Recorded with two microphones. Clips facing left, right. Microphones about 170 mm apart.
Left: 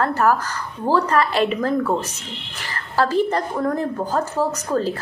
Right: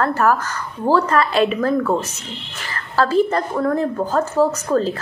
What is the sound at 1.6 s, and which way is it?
A woman's voice, 15° left (ahead or behind).